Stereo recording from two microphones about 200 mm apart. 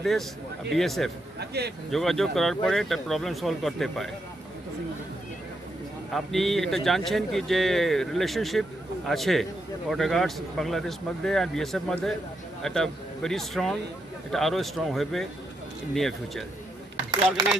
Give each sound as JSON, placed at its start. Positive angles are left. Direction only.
{"t": 0.7, "sound": "speech", "side_deg": 0}
{"t": 1.4, "sound": "a sound", "side_deg": -55}
{"t": 1.9, "sound": "speech", "side_deg": 0}
{"t": 6.1, "sound": "speech", "side_deg": 0}